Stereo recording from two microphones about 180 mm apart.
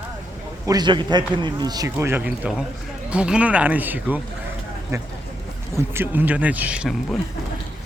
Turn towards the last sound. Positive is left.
turn(degrees=-5)  # may be behind; listen again after turning